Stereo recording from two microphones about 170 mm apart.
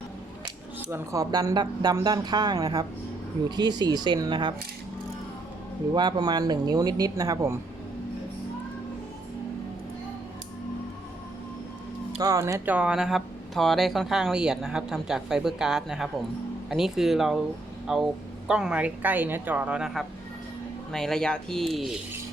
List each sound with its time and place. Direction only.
0.8 s speech: 15° right (ahead or behind)
5.9 s speech: 25° right (ahead or behind)
12.2 s speech: 20° right (ahead or behind); by 21.9 s centre (ahead or behind)